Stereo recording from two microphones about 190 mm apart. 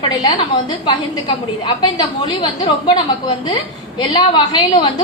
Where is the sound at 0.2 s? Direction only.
25° left (ahead or behind).